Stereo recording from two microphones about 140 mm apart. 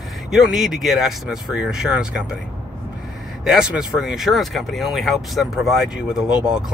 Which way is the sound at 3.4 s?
5° right (ahead or behind).